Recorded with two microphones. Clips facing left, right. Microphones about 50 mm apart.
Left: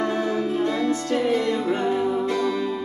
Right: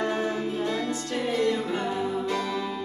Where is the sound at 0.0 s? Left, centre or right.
Left.